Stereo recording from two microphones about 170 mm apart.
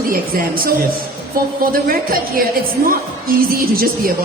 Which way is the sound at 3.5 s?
60° right (ahead or behind).